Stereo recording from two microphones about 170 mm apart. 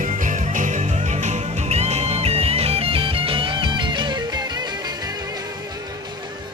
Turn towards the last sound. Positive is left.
turn(degrees=-25)  # may be behind; listen again after turning